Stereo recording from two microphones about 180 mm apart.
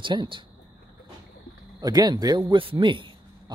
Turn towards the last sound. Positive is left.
turn(degrees=-30)  # may be behind; listen again after turning